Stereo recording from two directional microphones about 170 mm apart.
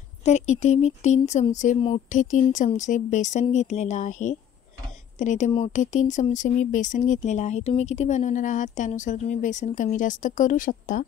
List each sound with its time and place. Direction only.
0.2 s speech: 45° left (ahead or behind)
5.5 s speech: 35° left (ahead or behind)
5.8 s speech: 45° left (ahead or behind)